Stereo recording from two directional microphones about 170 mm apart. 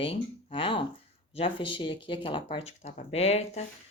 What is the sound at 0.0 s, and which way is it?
Speech, 30° left (ahead or behind).